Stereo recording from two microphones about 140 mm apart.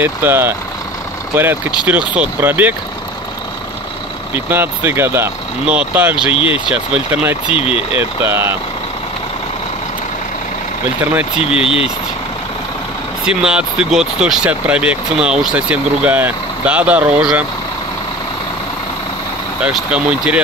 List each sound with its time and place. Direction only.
0.0 s speech: 15° right (ahead or behind)
4.5 s speech: 15° right (ahead or behind)
11.6 s speech: 40° left (ahead or behind)
13.2 s speech: 5° right (ahead or behind)
19.6 s speech: 10° right (ahead or behind)